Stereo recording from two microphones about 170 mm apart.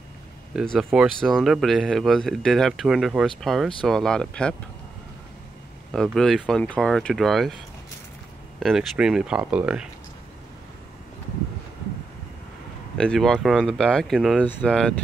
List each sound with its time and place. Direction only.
0.6 s speech: centre (ahead or behind)
6.1 s speech: centre (ahead or behind)
8.5 s speech: centre (ahead or behind)
12.9 s speech: 5° left (ahead or behind)